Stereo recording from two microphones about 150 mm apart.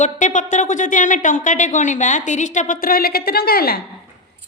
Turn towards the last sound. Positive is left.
turn(degrees=90)